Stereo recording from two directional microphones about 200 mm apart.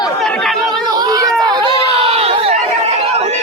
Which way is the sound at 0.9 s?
20° right (ahead or behind).